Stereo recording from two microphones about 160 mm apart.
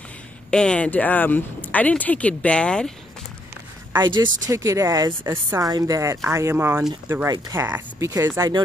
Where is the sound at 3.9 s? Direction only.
25° right (ahead or behind).